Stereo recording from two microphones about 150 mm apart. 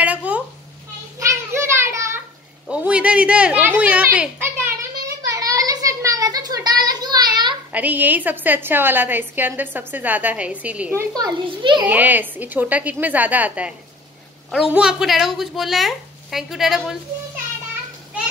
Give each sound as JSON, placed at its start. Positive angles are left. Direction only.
{"t": 0.0, "sound": "babbling", "side_deg": -10}
{"t": 1.2, "sound": "a sound", "side_deg": -20}
{"t": 2.7, "sound": "a woman's voice", "side_deg": -10}
{"t": 5.3, "sound": "a sound", "side_deg": -25}
{"t": 7.7, "sound": "a woman's voice", "side_deg": -10}
{"t": 11.1, "sound": "a child's voice", "side_deg": -30}
{"t": 11.8, "sound": "a woman's voice", "side_deg": -10}